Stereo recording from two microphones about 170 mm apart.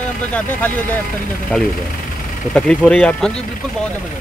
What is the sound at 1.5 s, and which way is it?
Speech, 5° left (ahead or behind).